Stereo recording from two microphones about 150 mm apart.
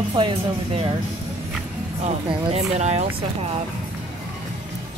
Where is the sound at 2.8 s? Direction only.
50° right (ahead or behind).